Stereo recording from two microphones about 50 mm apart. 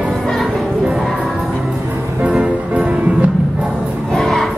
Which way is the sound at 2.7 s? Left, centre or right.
Right.